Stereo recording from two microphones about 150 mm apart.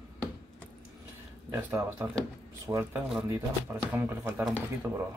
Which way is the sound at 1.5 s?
10° right (ahead or behind).